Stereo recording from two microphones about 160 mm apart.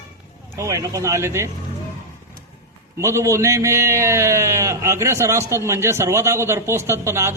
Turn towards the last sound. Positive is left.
turn(degrees=-15)  # may be behind; listen again after turning